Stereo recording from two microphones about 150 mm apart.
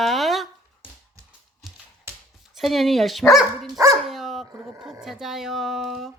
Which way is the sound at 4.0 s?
Centre (ahead or behind).